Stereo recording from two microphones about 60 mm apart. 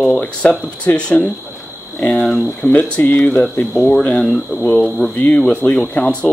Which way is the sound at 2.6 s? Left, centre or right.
Left.